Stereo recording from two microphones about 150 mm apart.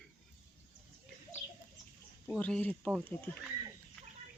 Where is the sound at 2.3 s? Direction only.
10° left (ahead or behind).